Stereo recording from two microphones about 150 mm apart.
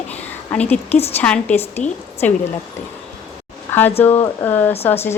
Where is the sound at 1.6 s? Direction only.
45° left (ahead or behind).